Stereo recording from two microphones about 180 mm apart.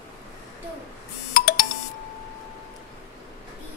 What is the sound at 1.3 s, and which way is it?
Doorbell, 55° left (ahead or behind).